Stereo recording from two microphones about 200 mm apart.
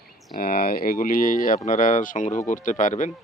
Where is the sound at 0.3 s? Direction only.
45° left (ahead or behind).